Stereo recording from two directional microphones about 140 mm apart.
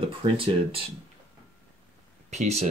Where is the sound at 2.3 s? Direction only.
55° right (ahead or behind).